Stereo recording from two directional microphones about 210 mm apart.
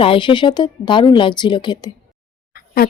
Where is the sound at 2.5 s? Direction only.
45° left (ahead or behind).